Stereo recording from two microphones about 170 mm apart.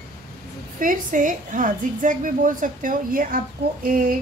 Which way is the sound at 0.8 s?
50° right (ahead or behind).